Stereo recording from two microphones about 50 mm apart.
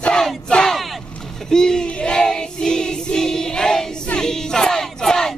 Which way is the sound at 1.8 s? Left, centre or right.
Centre.